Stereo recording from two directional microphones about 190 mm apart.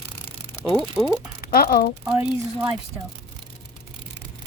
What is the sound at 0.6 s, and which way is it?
Speech, 5° left (ahead or behind).